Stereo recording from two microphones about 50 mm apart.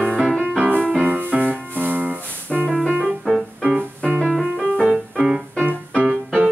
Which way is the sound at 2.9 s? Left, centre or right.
Centre.